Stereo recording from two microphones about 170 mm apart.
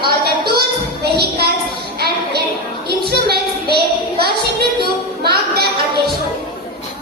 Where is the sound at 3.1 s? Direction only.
70° right (ahead or behind).